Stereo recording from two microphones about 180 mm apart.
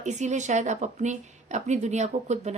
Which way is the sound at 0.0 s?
40° right (ahead or behind).